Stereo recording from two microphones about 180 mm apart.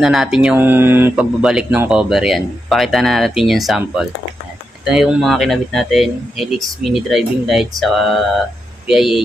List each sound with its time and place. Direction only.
0.0 s speech: centre (ahead or behind)